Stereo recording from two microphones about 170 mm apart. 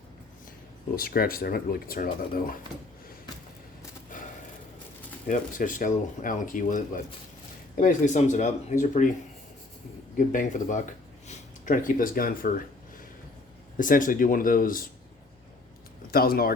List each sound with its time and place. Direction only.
0.9 s speech: 60° left (ahead or behind)
5.3 s speech: 50° left (ahead or behind)
10.2 s speech: 50° left (ahead or behind)
13.7 s speech: 50° left (ahead or behind)
16.1 s speech: 60° left (ahead or behind)